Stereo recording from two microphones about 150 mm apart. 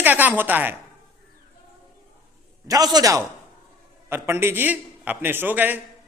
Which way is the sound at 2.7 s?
25° right (ahead or behind).